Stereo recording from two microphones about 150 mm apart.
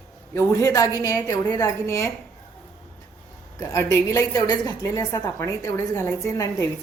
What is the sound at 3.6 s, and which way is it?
A woman's voice, 20° left (ahead or behind).